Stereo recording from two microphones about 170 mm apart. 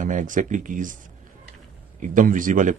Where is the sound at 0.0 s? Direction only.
50° right (ahead or behind).